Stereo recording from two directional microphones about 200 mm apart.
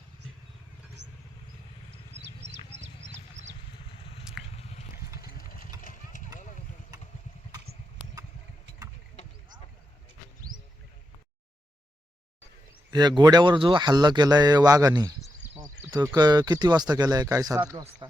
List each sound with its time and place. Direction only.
1.0 s vehicle: 60° right (ahead or behind)
2.6 s a sound: 25° left (ahead or behind)
4.5 s a sound: 35° left (ahead or behind)
5.2 s vehicle: 45° left (ahead or behind)
5.8 s clip-clop: 40° left (ahead or behind)
12.9 s speech: 20° right (ahead or behind)